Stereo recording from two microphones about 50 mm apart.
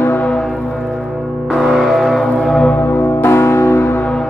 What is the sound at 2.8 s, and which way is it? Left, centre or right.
Music, left.